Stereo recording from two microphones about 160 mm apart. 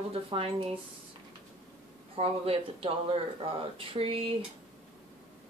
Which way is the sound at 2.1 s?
35° right (ahead or behind).